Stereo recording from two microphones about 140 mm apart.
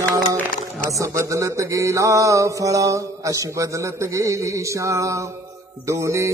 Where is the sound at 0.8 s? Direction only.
20° right (ahead or behind).